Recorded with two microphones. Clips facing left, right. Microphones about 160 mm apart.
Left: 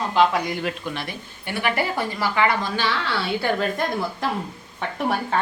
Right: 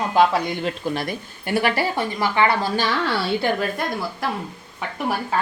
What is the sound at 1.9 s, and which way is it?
Speech, 25° right (ahead or behind).